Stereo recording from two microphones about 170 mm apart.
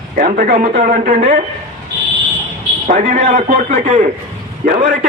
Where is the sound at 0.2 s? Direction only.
55° right (ahead or behind); by 1.4 s 40° right (ahead or behind).